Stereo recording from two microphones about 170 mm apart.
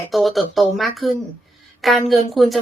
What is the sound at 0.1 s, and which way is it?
A woman's voice, centre (ahead or behind).